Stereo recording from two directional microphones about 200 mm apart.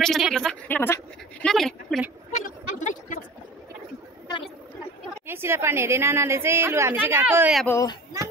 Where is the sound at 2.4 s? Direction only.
40° left (ahead or behind).